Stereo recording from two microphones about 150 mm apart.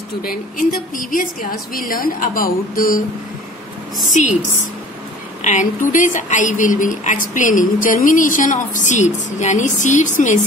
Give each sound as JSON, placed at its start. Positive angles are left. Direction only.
{"t": 0.2, "sound": "a woman's voice", "side_deg": 70}
{"t": 4.1, "sound": "a woman's voice", "side_deg": 55}
{"t": 5.4, "sound": "speech", "side_deg": 55}